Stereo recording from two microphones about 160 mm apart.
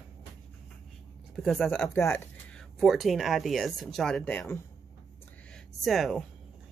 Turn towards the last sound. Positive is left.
turn(degrees=0)  # may be behind; listen again after turning